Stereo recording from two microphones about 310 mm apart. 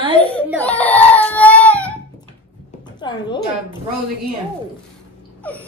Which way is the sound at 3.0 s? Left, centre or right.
Centre.